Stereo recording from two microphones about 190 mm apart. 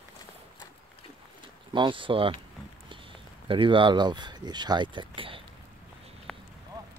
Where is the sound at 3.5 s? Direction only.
25° right (ahead or behind).